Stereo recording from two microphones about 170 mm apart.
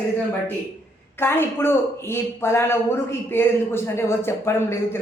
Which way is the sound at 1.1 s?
15° left (ahead or behind).